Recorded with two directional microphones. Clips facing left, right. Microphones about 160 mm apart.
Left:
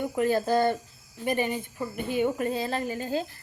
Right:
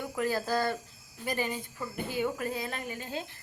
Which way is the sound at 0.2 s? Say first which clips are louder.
Left 6 dB; 20° left (ahead or behind).